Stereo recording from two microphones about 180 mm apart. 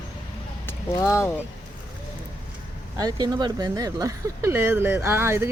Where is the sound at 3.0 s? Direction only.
20° right (ahead or behind).